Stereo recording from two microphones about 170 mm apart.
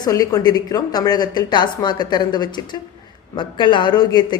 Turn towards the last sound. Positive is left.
turn(degrees=25)  # may be behind; listen again after turning